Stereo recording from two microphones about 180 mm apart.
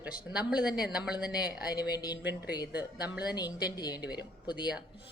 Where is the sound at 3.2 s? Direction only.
20° left (ahead or behind).